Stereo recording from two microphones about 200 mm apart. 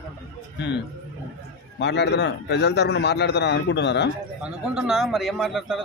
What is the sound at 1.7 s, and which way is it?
A man's voice, 60° left (ahead or behind).